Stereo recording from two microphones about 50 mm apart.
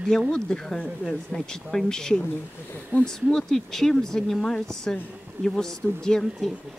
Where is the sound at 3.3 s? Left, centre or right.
Centre.